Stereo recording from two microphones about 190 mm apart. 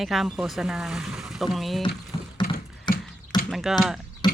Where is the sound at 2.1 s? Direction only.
20° left (ahead or behind).